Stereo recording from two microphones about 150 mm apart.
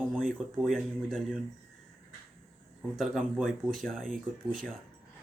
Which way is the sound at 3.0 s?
5° right (ahead or behind).